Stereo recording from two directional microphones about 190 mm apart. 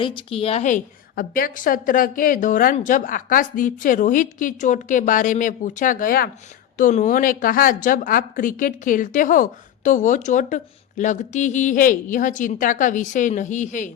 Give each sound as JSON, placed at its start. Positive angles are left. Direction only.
{"t": 0.0, "sound": "a woman's voice", "side_deg": 25}